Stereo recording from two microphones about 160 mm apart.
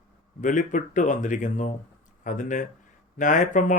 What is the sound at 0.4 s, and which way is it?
Speech, 50° left (ahead or behind).